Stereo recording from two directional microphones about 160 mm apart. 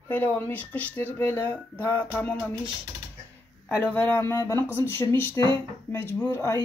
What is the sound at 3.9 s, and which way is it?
Speech, 15° left (ahead or behind).